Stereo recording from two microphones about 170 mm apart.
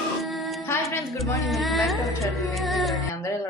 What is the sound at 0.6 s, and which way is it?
Music, 15° left (ahead or behind).